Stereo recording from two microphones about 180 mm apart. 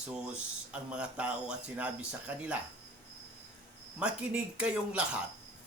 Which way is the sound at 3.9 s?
5° right (ahead or behind).